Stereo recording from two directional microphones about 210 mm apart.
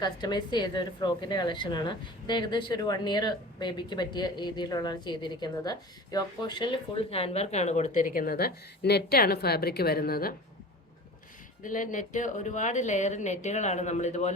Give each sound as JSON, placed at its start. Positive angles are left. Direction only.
{"t": 0.0, "sound": "a woman's voice", "side_deg": 20}
{"t": 11.6, "sound": "speech", "side_deg": 40}